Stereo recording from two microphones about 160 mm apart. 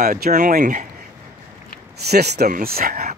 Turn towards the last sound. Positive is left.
turn(degrees=-65)  # may be behind; listen again after turning